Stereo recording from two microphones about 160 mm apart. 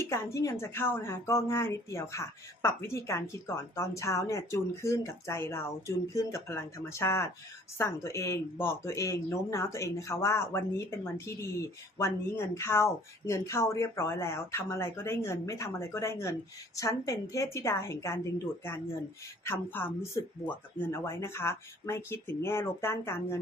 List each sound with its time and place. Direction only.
0.0 s a woman's voice: 15° left (ahead or behind)
19.5 s a woman's voice: 15° left (ahead or behind)